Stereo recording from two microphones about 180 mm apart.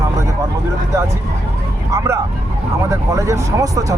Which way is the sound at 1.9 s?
15° right (ahead or behind).